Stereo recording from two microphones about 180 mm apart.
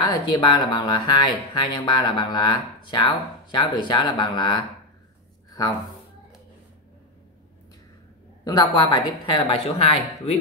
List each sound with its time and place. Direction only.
0.0 s speech: 25° left (ahead or behind)
8.5 s speech: 25° left (ahead or behind)